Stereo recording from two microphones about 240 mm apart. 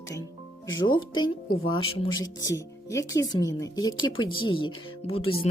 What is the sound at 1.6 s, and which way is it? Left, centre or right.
A woman's voice, left.